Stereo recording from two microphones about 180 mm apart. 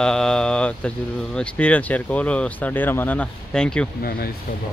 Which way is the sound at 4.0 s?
55° left (ahead or behind).